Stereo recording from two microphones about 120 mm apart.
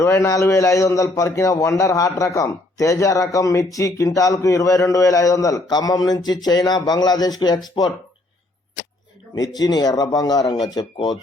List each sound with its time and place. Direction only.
0.0 s a man's voice: 25° left (ahead or behind)
9.3 s speech: 35° left (ahead or behind)